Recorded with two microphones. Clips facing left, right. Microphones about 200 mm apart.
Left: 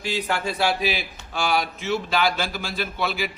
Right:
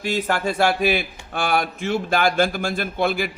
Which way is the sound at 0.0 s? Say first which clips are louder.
Right 4 dB; 45° right (ahead or behind).